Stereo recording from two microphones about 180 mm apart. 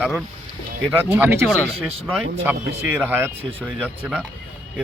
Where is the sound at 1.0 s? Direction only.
10° right (ahead or behind).